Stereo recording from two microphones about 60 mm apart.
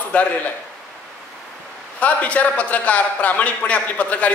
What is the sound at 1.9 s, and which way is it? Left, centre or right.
A man's voice, left.